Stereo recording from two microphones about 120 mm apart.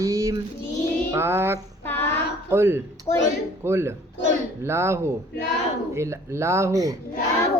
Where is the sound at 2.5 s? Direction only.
20° right (ahead or behind).